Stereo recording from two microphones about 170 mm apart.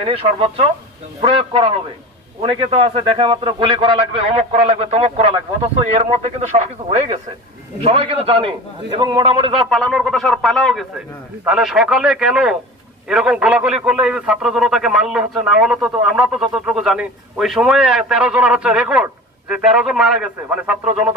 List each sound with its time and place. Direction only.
0.0 s a man's voice: 35° right (ahead or behind)
7.8 s a man's voice: 35° right (ahead or behind)
9.7 s a man's voice: centre (ahead or behind)